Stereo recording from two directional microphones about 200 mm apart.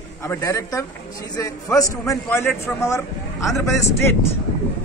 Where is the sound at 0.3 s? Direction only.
15° left (ahead or behind).